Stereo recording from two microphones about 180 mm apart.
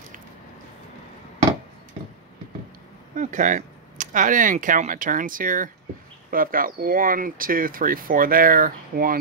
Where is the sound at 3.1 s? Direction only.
45° right (ahead or behind).